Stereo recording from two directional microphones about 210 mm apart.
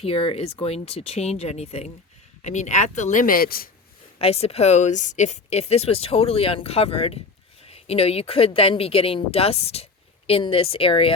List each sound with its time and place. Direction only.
0.0 s speech: 25° left (ahead or behind); by 3.7 s 45° left (ahead or behind)
4.2 s speech: 30° left (ahead or behind)